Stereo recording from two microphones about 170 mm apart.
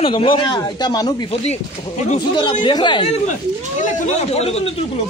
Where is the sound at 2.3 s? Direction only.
25° left (ahead or behind).